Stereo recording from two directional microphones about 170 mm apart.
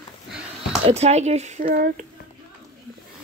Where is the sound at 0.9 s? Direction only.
40° right (ahead or behind).